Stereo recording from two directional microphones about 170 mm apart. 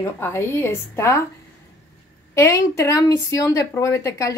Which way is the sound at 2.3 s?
15° left (ahead or behind).